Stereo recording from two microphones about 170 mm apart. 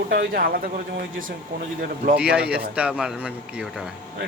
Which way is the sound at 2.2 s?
5° right (ahead or behind).